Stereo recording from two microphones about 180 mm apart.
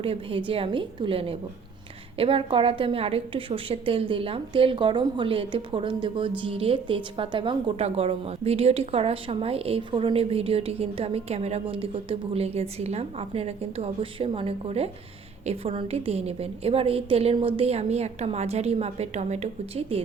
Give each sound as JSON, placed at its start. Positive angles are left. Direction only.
{"t": 0.0, "sound": "a woman's voice", "side_deg": -30}